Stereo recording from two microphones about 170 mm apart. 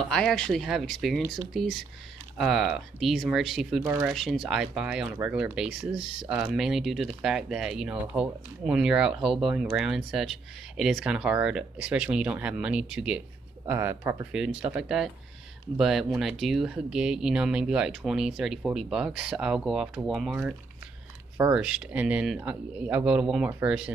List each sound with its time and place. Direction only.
0.1 s speech: 5° left (ahead or behind)
21.4 s speech: 10° right (ahead or behind)